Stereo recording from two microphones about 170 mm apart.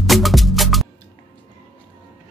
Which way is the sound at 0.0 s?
Centre (ahead or behind).